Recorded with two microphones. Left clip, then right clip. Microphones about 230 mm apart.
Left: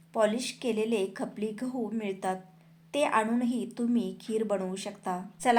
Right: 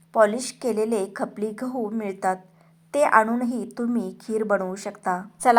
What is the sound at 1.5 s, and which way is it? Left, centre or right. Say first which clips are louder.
Speech: right 6 dB; right.